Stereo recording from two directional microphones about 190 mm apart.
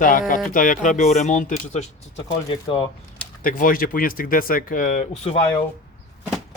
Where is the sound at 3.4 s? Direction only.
45° left (ahead or behind).